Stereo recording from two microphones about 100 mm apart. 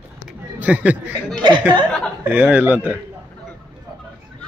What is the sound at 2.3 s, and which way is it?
Speech, 15° right (ahead or behind).